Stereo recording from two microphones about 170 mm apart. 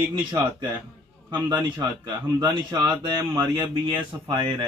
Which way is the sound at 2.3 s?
25° right (ahead or behind).